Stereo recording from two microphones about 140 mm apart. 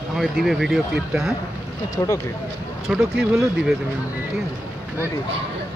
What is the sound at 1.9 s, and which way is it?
Speech, 20° left (ahead or behind).